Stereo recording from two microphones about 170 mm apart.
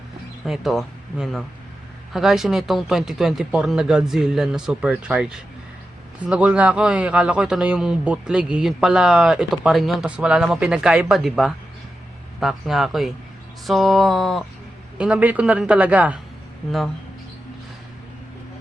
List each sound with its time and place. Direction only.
0.4 s a man's voice: centre (ahead or behind)